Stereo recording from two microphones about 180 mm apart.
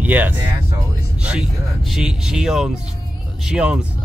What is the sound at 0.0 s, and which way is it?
Speech, 10° right (ahead or behind).